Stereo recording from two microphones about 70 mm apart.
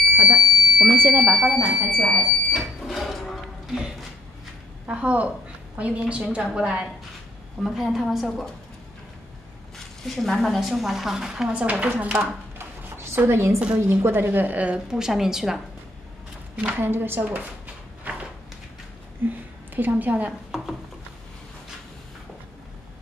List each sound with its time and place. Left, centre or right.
0.0 s fire alarm: centre
1.1 s a woman's voice: centre
2.0 s speech: centre
2.9 s a sound: centre
4.8 s a woman's voice: centre
10.1 s a woman's voice: centre; by 12.1 s right
12.2 s a sound: right
14.0 s a woman's voice: right; by 15.6 s centre
16.5 s a woman's voice: right
18.1 s a sound: right
19.2 s a woman's voice: right